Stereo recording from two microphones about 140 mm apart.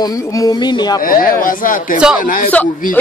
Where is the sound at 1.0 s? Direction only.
90° left.